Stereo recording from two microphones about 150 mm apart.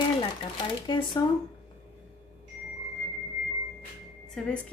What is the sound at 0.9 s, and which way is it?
Speech, 30° left (ahead or behind).